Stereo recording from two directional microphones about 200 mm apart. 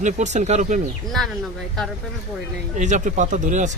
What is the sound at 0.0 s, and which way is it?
Speech, 35° right (ahead or behind).